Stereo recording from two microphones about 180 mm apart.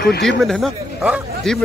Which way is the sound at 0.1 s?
65° left (ahead or behind).